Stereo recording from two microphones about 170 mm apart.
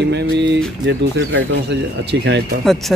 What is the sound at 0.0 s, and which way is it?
Speech, 80° right.